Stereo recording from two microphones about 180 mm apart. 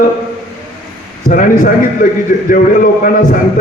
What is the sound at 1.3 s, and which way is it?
A man's voice, 50° left (ahead or behind).